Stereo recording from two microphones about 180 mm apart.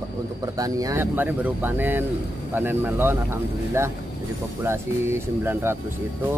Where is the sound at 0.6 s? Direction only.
20° right (ahead or behind).